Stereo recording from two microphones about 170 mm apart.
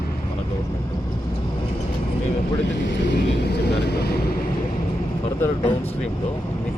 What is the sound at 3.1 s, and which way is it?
Vehicle, 75° left (ahead or behind).